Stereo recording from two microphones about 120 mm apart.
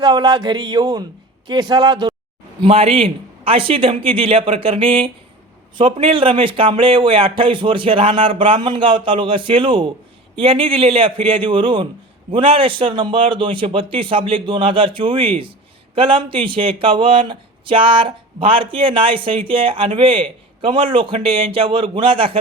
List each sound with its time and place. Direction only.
0.0 s speech: 35° right (ahead or behind)
2.6 s speech: 50° right (ahead or behind)